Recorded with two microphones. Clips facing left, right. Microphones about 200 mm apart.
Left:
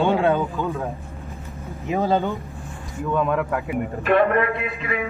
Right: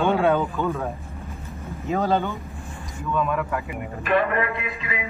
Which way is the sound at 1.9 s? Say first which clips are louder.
Left 2 dB; 15° left (ahead or behind).